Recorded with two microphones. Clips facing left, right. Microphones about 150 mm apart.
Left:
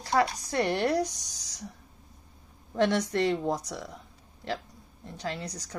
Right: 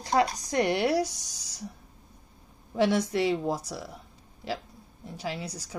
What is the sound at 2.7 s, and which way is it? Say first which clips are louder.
Speech: right 1 dB; 5° right (ahead or behind).